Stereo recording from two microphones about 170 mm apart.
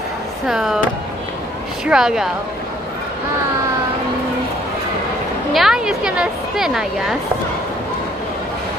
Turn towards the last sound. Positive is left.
turn(degrees=0)  # may be behind; listen again after turning